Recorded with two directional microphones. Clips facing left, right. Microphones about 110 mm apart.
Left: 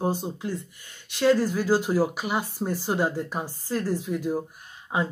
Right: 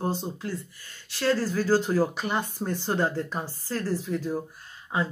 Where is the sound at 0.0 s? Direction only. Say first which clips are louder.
Left 2 dB; 15° left (ahead or behind).